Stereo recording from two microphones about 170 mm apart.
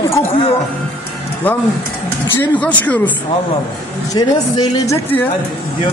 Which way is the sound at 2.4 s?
10° left (ahead or behind).